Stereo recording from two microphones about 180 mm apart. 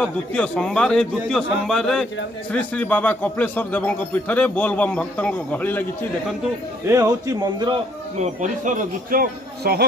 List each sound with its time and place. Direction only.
0.0 s a man's voice: 5° left (ahead or behind)
6.9 s speech: 20° right (ahead or behind)
8.2 s a man's voice: 45° right (ahead or behind); by 9.8 s 60° right (ahead or behind)